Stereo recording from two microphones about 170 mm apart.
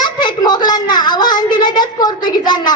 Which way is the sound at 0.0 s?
25° left (ahead or behind).